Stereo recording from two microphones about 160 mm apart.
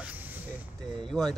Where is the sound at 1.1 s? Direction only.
Centre (ahead or behind).